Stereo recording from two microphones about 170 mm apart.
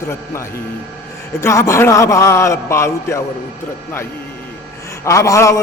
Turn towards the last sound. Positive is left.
turn(degrees=20)  # may be behind; listen again after turning